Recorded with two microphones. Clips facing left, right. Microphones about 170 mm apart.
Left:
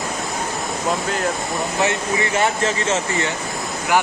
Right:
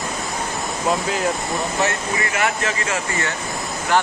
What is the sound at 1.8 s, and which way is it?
Speech, 20° left (ahead or behind).